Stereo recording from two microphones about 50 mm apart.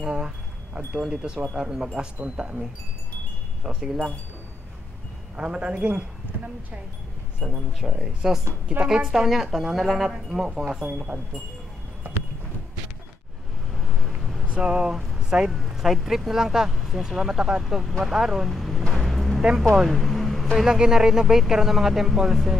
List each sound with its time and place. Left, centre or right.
0.0 s wind chime: centre
1.1 s speech: centre
3.6 s speech: centre
5.3 s speech: right
7.5 s speech: centre
13.7 s vehicle: centre
14.5 s speech: right; by 18.9 s centre
18.9 s a sound: centre
19.9 s vehicle: centre
20.5 s speech: centre